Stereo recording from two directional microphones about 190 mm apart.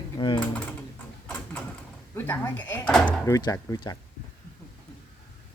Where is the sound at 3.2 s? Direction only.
15° left (ahead or behind).